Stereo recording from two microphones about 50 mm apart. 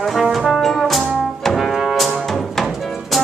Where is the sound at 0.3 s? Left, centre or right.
Centre.